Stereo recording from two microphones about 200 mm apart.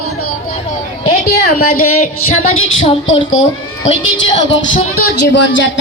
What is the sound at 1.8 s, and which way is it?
Music, 90° left.